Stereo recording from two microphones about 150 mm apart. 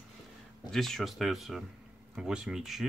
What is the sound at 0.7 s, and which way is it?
Speech, centre (ahead or behind).